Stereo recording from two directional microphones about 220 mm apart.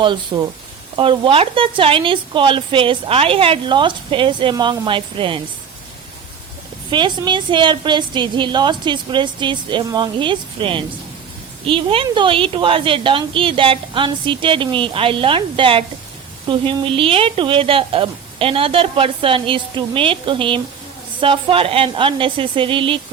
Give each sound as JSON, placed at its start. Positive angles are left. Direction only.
{"t": 0.0, "sound": "speech", "side_deg": -20}
{"t": 6.9, "sound": "speech", "side_deg": -20}